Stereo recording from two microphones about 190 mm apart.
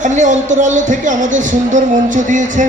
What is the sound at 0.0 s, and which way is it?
A woman's voice, 40° right (ahead or behind).